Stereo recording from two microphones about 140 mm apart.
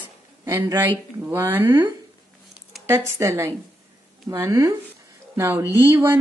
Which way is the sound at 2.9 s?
20° right (ahead or behind).